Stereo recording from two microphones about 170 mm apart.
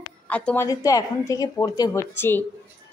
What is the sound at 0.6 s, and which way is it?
A woman's voice, 20° left (ahead or behind).